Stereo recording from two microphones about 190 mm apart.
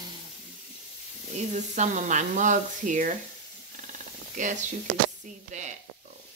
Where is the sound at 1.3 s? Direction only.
40° right (ahead or behind).